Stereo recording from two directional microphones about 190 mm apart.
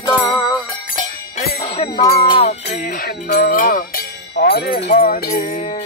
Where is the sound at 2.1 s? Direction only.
30° left (ahead or behind).